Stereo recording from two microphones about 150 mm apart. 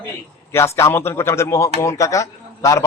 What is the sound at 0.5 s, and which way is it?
A man's voice, 20° left (ahead or behind).